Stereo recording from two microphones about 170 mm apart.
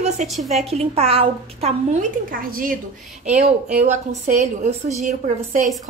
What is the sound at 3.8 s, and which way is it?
A woman's voice, 45° right (ahead or behind).